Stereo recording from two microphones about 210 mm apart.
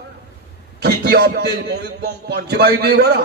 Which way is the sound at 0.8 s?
50° right (ahead or behind).